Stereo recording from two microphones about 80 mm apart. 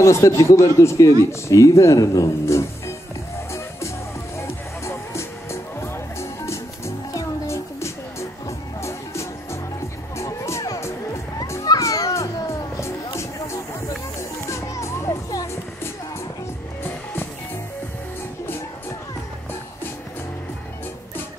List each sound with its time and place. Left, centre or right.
0.0 s speech: left
4.4 s music: left
11.6 s children playing: left
16.8 s music: left